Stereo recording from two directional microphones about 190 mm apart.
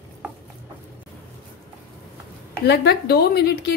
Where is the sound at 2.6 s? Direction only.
60° left (ahead or behind).